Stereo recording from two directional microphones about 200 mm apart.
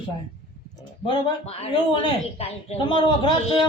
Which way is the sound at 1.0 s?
25° left (ahead or behind).